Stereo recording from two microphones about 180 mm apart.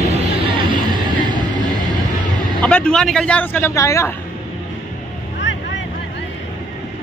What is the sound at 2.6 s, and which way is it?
Speech, 5° left (ahead or behind).